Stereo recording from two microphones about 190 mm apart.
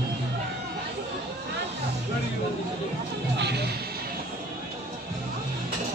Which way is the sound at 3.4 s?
60° right (ahead or behind).